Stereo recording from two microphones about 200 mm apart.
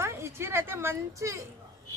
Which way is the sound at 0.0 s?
10° right (ahead or behind).